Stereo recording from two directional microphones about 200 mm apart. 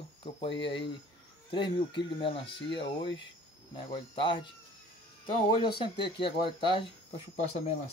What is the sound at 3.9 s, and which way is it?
Speech, 25° left (ahead or behind).